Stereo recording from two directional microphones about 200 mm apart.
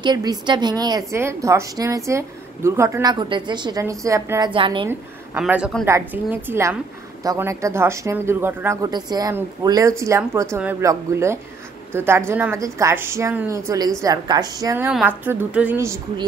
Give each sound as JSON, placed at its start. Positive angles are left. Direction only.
{"t": 0.0, "sound": "a woman's voice", "side_deg": -20}
{"t": 4.6, "sound": "a woman's voice", "side_deg": -25}
{"t": 4.8, "sound": "a woman's voice", "side_deg": -10}
{"t": 14.9, "sound": "a woman's voice", "side_deg": -5}